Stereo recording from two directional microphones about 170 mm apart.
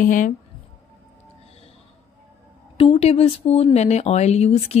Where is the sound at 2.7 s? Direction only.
35° left (ahead or behind).